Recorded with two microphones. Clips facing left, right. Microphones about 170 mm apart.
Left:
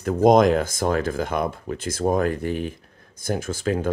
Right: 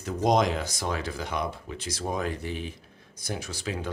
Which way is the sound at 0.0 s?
55° left (ahead or behind).